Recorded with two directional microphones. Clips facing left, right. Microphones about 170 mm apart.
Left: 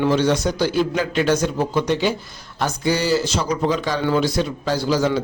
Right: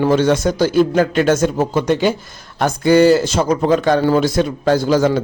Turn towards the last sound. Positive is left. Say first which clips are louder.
# right 5 dB
turn(degrees=-50)  # may be behind; listen again after turning